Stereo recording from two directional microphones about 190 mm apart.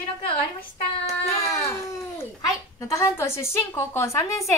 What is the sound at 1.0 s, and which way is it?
Baby cry, 15° left (ahead or behind).